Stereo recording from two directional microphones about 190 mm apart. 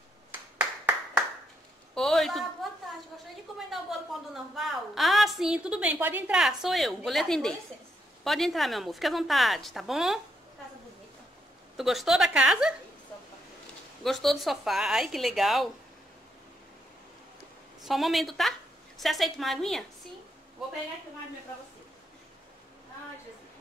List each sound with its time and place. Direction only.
0.3 s clapping: 5° right (ahead or behind)
2.0 s a sound: centre (ahead or behind)
4.1 s a sound: centre (ahead or behind)
8.2 s speech: centre (ahead or behind)
11.7 s speech: centre (ahead or behind)
14.0 s speech: centre (ahead or behind)
17.8 s speech: centre (ahead or behind)